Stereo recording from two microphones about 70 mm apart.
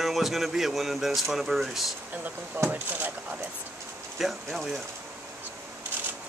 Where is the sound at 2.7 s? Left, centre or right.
Right.